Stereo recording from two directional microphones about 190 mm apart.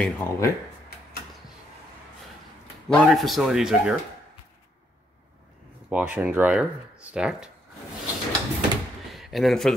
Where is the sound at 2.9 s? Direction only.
Centre (ahead or behind).